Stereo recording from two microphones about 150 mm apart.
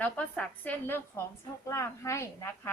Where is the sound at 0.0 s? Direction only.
10° left (ahead or behind).